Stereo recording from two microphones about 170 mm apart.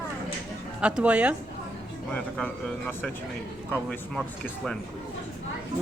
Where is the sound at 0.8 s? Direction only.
5° right (ahead or behind).